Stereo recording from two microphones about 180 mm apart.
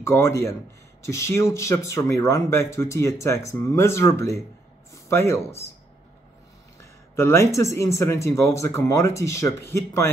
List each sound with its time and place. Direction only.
0.0 s speech: 15° left (ahead or behind)
6.8 s speech: 15° left (ahead or behind)